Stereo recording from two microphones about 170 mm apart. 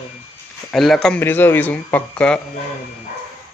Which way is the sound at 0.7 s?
Centre (ahead or behind).